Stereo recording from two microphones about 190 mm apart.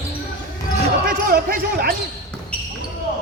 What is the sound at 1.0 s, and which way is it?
Speech, 50° right (ahead or behind).